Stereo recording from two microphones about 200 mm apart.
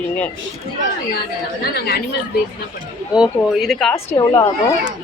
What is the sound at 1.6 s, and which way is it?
Speech, 50° left (ahead or behind).